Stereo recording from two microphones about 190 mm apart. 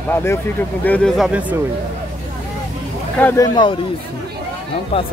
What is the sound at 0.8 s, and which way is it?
Speech, 5° left (ahead or behind).